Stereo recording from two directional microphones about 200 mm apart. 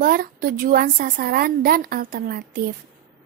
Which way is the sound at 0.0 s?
45° right (ahead or behind).